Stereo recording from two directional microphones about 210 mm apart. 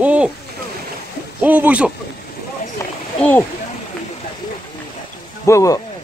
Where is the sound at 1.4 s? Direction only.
10° right (ahead or behind).